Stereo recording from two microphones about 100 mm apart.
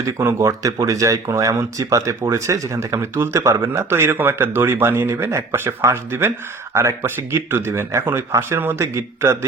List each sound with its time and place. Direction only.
0.2 s speech: 30° right (ahead or behind)